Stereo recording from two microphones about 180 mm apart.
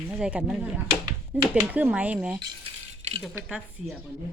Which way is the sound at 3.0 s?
40° right (ahead or behind).